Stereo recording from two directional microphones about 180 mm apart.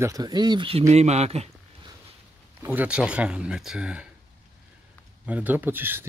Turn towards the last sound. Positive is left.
turn(degrees=-10)  # may be behind; listen again after turning